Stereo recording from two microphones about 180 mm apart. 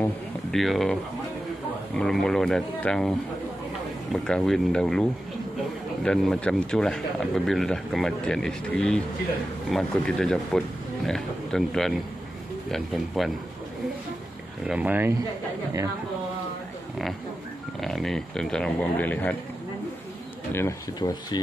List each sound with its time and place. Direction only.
0.0 s speech: centre (ahead or behind)
2.0 s speech: 5° left (ahead or behind)
14.7 s speech: 10° right (ahead or behind)
17.7 s speech: centre (ahead or behind)
20.5 s speech: 20° left (ahead or behind)